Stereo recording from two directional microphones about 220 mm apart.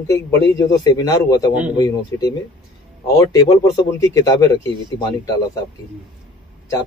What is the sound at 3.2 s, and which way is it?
A man's voice, 15° left (ahead or behind).